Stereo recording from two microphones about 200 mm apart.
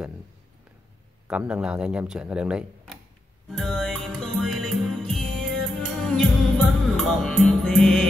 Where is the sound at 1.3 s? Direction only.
5° right (ahead or behind).